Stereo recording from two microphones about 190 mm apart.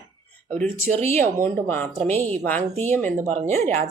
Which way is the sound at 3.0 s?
40° right (ahead or behind).